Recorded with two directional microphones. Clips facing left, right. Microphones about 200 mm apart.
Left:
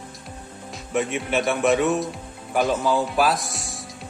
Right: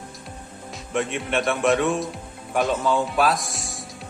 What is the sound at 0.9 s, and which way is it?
Speech, centre (ahead or behind).